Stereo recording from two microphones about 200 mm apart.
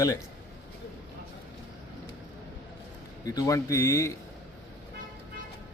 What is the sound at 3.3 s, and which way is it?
Speech, 15° left (ahead or behind).